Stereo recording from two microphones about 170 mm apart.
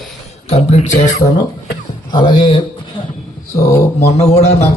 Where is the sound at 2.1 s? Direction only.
30° left (ahead or behind).